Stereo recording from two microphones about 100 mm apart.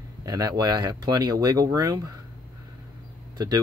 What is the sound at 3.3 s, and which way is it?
Speech, 40° right (ahead or behind).